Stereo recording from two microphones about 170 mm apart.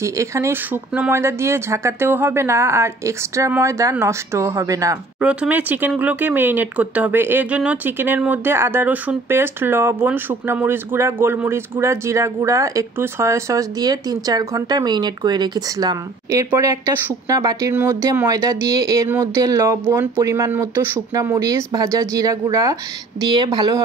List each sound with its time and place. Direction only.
0.0 s speech: 15° right (ahead or behind)
5.2 s speech: 5° right (ahead or behind); by 23.8 s 25° right (ahead or behind)